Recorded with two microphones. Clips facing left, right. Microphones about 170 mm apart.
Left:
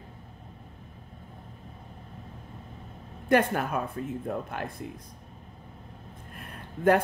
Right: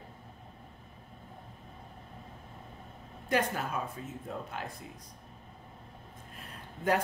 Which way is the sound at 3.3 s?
55° left (ahead or behind).